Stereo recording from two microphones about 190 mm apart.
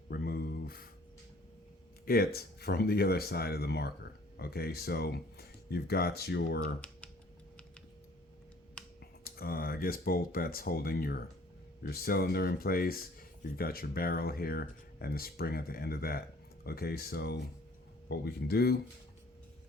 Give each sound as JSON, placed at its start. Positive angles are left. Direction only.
{"t": 0.1, "sound": "a sound", "side_deg": 55}
{"t": 2.0, "sound": "speech", "side_deg": 55}
{"t": 9.0, "sound": "speech", "side_deg": 50}